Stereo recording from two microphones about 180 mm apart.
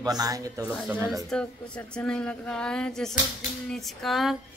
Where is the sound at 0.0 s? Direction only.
20° right (ahead or behind).